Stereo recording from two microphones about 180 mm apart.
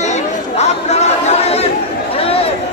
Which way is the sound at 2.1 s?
35° left (ahead or behind).